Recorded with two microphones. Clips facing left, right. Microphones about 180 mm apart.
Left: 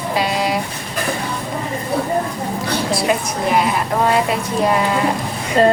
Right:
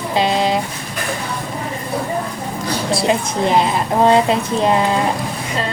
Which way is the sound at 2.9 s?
25° right (ahead or behind).